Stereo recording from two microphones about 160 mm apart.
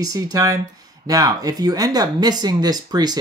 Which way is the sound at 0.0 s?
25° right (ahead or behind).